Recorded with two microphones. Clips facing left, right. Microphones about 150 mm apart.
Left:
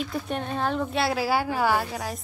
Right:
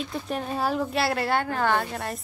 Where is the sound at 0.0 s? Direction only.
Centre (ahead or behind).